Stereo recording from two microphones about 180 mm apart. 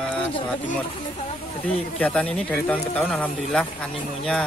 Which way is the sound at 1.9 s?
5° left (ahead or behind).